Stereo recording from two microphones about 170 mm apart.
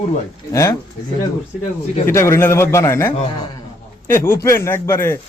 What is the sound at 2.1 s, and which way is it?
A man's voice, 15° left (ahead or behind).